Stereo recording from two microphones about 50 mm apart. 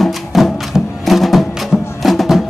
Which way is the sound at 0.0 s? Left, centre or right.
Centre.